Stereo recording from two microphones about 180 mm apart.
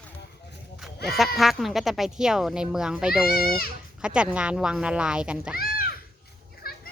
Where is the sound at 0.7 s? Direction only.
Centre (ahead or behind).